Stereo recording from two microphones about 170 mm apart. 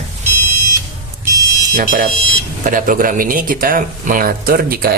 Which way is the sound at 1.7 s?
55° right (ahead or behind).